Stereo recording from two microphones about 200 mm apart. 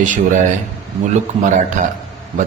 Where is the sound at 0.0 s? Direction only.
40° right (ahead or behind).